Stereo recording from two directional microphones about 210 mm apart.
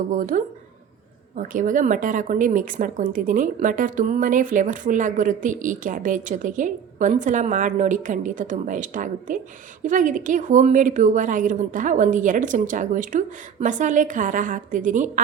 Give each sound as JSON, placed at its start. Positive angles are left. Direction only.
{"t": 0.1, "sound": "a woman's voice", "side_deg": -40}